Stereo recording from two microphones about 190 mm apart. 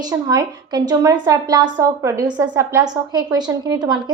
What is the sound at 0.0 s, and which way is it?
A woman's voice, 20° right (ahead or behind).